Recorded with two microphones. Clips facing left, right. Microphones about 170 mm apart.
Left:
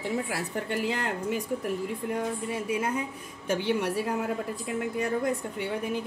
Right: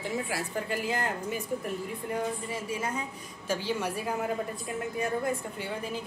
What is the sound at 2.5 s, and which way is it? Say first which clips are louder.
A woman's voice: left 4 dB; 60° left (ahead or behind).